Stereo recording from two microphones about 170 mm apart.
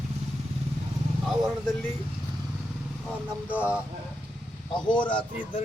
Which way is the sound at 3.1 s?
10° right (ahead or behind).